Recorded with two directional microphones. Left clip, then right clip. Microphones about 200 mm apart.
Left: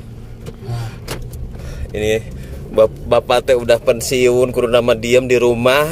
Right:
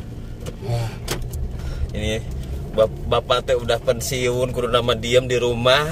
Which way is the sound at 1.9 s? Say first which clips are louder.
Left 9 dB; 45° left (ahead or behind).